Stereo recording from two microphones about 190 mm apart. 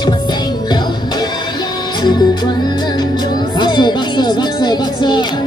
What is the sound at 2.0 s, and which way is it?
Music, 25° left (ahead or behind).